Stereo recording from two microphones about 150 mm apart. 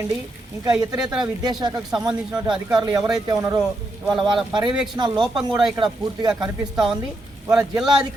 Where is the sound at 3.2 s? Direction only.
25° right (ahead or behind).